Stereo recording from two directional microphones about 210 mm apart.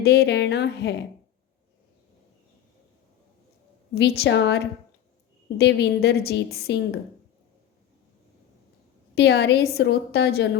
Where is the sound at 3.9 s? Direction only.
50° left (ahead or behind).